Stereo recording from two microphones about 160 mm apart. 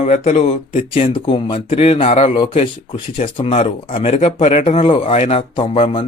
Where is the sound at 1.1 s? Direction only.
30° left (ahead or behind).